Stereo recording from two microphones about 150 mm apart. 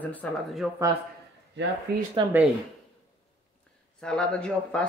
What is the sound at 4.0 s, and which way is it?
Speech, 5° left (ahead or behind).